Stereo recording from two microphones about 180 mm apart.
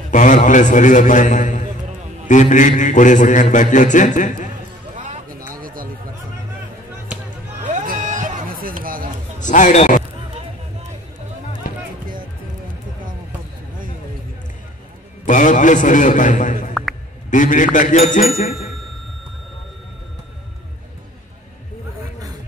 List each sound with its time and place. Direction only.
0.1 s a man's voice: 45° left (ahead or behind)
4.9 s a sound: 45° right (ahead or behind)
5.5 s chatter: 50° right (ahead or behind)
7.6 s a sound: 45° right (ahead or behind)
9.4 s speech: 45° left (ahead or behind)
15.2 s a man's voice: 45° left (ahead or behind)